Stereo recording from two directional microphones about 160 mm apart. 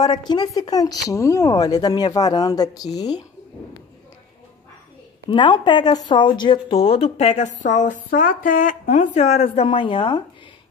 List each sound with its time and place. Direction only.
0.0 s speech: 25° left (ahead or behind)
5.3 s speech: 30° left (ahead or behind)